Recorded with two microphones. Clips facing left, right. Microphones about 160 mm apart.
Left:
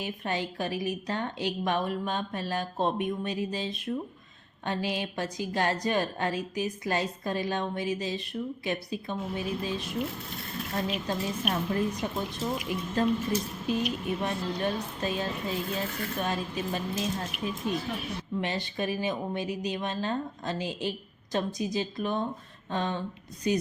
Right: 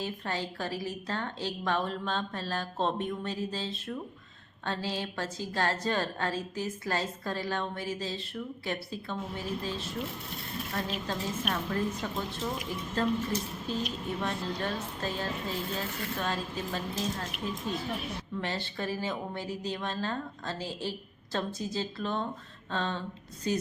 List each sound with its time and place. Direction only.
0.0 s a woman's voice: 15° left (ahead or behind)
18.3 s a woman's voice: 15° left (ahead or behind)